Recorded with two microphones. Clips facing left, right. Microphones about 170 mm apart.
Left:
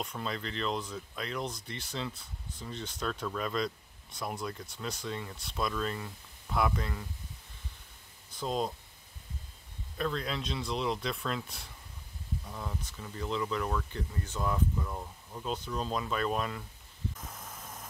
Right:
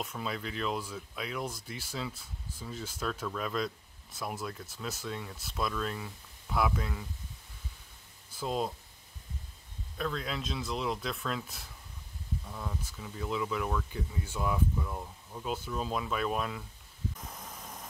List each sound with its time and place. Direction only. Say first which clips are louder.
0.0 s speech: even; 5° right (ahead or behind)
8.3 s speech: even; 5° right (ahead or behind)
9.9 s speech: left 1 dB; centre (ahead or behind)